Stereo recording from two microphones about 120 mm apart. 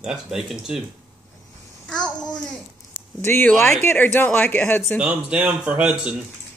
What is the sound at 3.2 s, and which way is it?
Speech, 15° left (ahead or behind).